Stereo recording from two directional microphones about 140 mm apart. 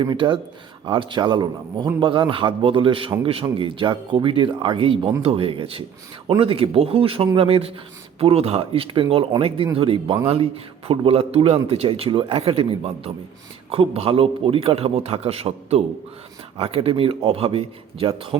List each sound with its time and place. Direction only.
0.0 s a man's voice: 35° right (ahead or behind)